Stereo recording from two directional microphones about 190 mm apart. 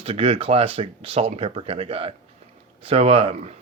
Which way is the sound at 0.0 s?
30° right (ahead or behind).